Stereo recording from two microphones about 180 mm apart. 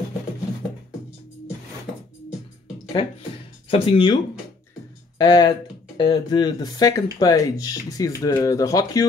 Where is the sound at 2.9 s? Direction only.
30° left (ahead or behind).